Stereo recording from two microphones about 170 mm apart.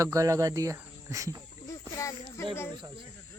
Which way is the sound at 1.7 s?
15° left (ahead or behind).